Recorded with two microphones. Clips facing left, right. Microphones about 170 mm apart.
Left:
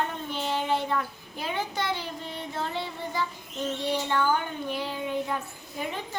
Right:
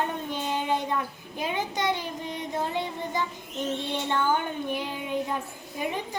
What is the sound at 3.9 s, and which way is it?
Child singing, 25° right (ahead or behind).